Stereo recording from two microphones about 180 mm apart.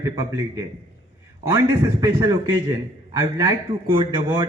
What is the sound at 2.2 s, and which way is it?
A man's voice, 20° right (ahead or behind).